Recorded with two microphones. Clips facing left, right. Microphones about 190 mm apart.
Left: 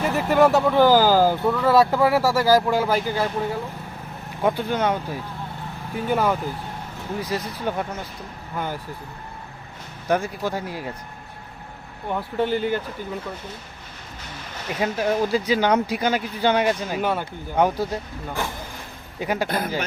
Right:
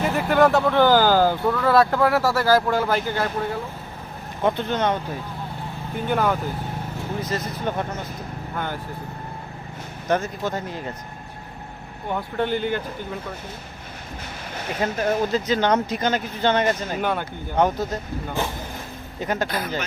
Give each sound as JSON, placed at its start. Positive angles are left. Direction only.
{"t": 0.2, "sound": "speech", "side_deg": 5}
{"t": 4.4, "sound": "speech", "side_deg": 10}
{"t": 6.1, "sound": "speech", "side_deg": 5}
{"t": 10.1, "sound": "speech", "side_deg": 10}
{"t": 12.0, "sound": "speech", "side_deg": 0}
{"t": 14.8, "sound": "speech", "side_deg": 10}
{"t": 19.2, "sound": "speech", "side_deg": 10}
{"t": 19.5, "sound": "speech", "side_deg": 55}